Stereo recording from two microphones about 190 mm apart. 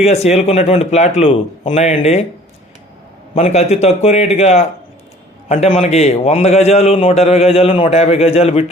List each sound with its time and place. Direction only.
0.0 s a man's voice: 35° left (ahead or behind)
3.3 s a man's voice: 35° left (ahead or behind)